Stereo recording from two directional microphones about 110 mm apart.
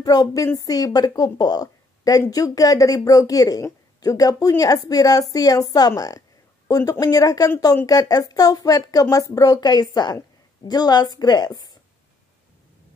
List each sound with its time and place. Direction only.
0.0 s a woman's voice: 35° left (ahead or behind)